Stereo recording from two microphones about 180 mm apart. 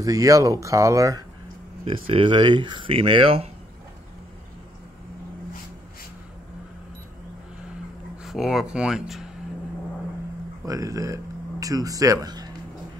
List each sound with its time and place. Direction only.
0.0 s speech: 20° right (ahead or behind)
1.9 s speech: 30° right (ahead or behind)
8.2 s speech: centre (ahead or behind)
10.6 s speech: 20° right (ahead or behind)